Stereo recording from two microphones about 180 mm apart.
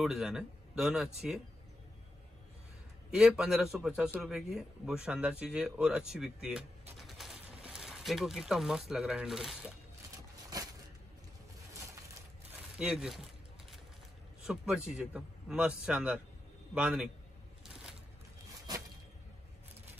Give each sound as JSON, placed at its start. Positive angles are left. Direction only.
{"t": 0.0, "sound": "a man's voice", "side_deg": 0}
{"t": 3.1, "sound": "a man's voice", "side_deg": -5}
{"t": 11.7, "sound": "coin", "side_deg": -15}
{"t": 12.4, "sound": "a sound", "side_deg": -5}
{"t": 14.4, "sound": "a man's voice", "side_deg": -5}